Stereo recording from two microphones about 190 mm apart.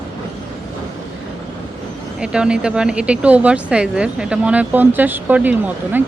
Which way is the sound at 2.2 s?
5° right (ahead or behind).